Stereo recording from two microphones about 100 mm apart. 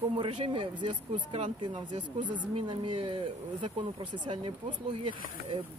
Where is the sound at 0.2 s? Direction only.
60° right (ahead or behind).